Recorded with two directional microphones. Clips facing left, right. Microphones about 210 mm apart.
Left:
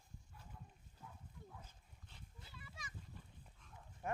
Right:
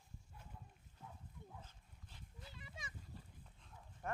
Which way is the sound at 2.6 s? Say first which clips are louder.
Left 1 dB; 25° right (ahead or behind).